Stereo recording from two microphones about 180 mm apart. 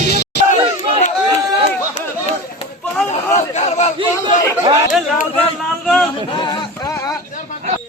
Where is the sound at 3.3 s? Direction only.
40° left (ahead or behind).